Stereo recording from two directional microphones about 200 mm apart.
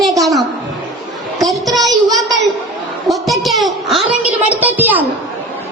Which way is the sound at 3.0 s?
Centre (ahead or behind).